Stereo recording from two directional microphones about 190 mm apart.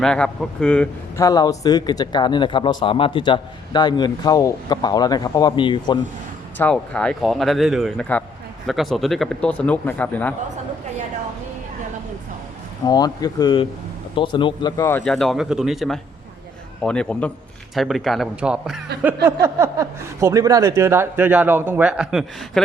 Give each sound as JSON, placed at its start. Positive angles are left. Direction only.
{"t": 0.0, "sound": "a man's voice", "side_deg": 5}
{"t": 1.2, "sound": "speech", "side_deg": 20}
{"t": 6.6, "sound": "a man's voice", "side_deg": 5}
{"t": 12.8, "sound": "speech", "side_deg": 20}
{"t": 15.0, "sound": "a man's voice", "side_deg": 0}